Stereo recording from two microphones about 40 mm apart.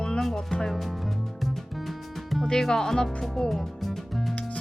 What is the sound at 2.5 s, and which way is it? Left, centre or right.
Speech, centre.